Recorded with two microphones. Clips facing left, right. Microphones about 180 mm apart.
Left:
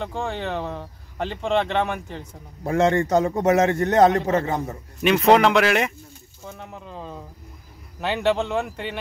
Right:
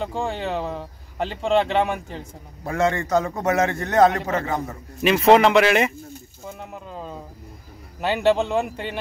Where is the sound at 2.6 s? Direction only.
30° left (ahead or behind).